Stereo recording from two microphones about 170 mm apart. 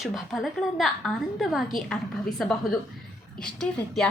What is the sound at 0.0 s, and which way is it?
A woman's voice, centre (ahead or behind).